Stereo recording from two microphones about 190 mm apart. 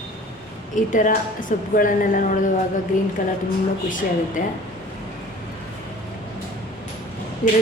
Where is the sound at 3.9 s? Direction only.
45° left (ahead or behind).